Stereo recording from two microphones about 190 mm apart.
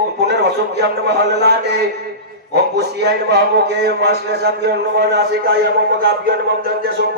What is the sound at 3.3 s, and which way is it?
A man's voice, 60° right (ahead or behind).